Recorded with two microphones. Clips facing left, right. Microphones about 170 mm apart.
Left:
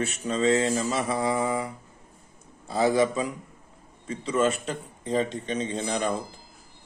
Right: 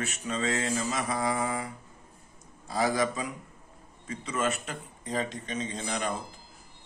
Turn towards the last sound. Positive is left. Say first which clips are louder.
# left 5 dB
turn(degrees=30)  # may be behind; listen again after turning